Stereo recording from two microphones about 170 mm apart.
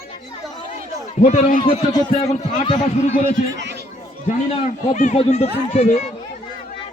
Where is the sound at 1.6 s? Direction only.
35° left (ahead or behind).